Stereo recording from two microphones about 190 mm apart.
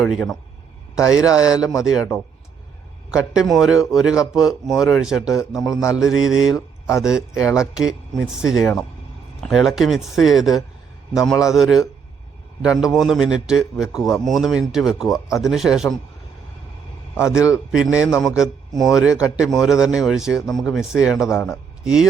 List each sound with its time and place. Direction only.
0.0 s a man's voice: 5° left (ahead or behind)
0.9 s a man's voice: 15° left (ahead or behind)
3.1 s a man's voice: 5° right (ahead or behind)
5.8 s a man's voice: 15° left (ahead or behind)
6.1 s a man's voice: 5° right (ahead or behind)
17.2 s a man's voice: 15° left (ahead or behind)
17.7 s a man's voice: 5° right (ahead or behind)
21.2 s a man's voice: 15° left (ahead or behind)